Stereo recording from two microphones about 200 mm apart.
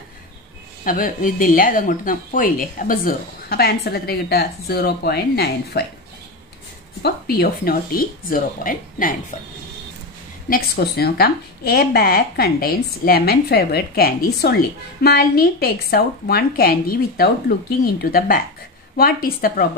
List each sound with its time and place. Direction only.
0.8 s speech: 45° left (ahead or behind)
7.0 s speech: 50° left (ahead or behind)
10.5 s speech: 50° left (ahead or behind)